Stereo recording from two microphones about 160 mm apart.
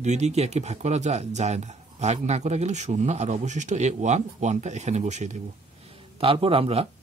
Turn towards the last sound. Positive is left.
turn(degrees=-40)  # may be behind; listen again after turning